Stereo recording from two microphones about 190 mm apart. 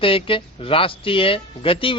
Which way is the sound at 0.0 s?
30° left (ahead or behind).